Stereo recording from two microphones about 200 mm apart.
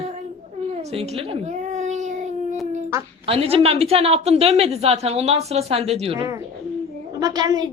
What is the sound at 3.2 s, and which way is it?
A woman's voice, 30° right (ahead or behind).